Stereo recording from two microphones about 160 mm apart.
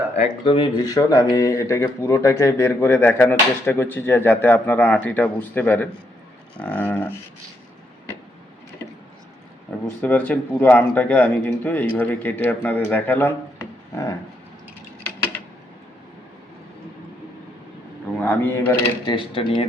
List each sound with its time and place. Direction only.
0.2 s speech: 35° left (ahead or behind)
0.8 s speech: 25° left (ahead or behind)
9.8 s speech: 10° left (ahead or behind)
13.6 s a sound: 20° left (ahead or behind)
18.2 s speech: 15° left (ahead or behind)
19.0 s speech: 35° left (ahead or behind)